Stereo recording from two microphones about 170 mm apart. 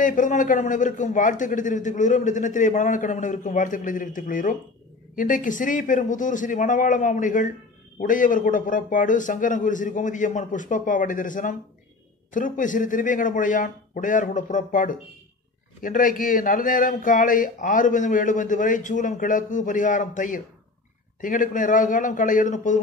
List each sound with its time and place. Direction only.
0.0 s a man's voice: 50° left (ahead or behind)